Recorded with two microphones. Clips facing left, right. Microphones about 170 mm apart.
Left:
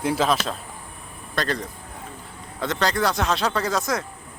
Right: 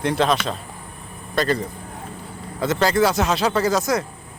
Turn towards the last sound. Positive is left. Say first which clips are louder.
# right 5 dB
turn(degrees=0)  # may be behind; listen again after turning